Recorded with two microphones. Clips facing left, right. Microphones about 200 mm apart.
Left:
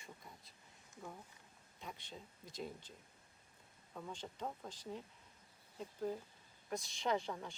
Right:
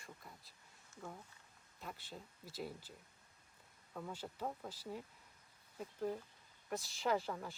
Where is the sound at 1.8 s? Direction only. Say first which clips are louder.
Right 1 dB; 5° right (ahead or behind).